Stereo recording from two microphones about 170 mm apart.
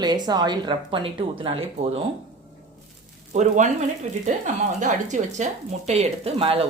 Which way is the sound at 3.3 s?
45° right (ahead or behind).